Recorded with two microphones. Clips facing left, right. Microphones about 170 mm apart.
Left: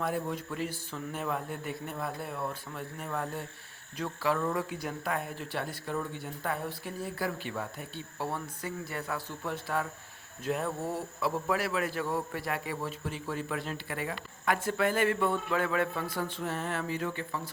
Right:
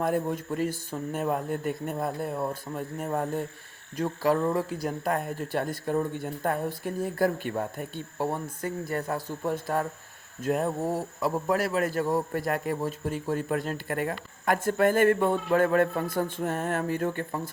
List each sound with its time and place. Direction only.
0.0 s a man's voice: 45° right (ahead or behind)
4.4 s speech: 25° right (ahead or behind)
4.7 s a man's voice: 40° right (ahead or behind)